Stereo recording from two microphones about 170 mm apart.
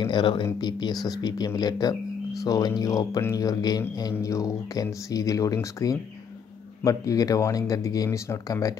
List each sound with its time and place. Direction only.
0.0 s speech: 30° left (ahead or behind)